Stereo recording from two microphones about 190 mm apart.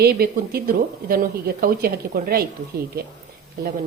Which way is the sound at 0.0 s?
55° right (ahead or behind).